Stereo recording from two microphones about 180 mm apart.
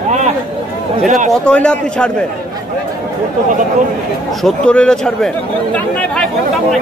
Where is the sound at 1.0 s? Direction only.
40° right (ahead or behind).